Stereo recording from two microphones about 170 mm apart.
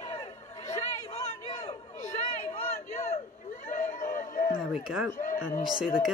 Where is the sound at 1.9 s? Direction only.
45° left (ahead or behind).